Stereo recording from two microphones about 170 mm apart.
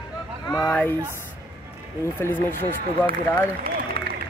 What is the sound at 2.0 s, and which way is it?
Speech, 15° left (ahead or behind).